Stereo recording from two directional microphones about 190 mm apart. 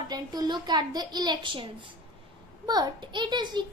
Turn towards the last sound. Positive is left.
turn(degrees=-25)  # may be behind; listen again after turning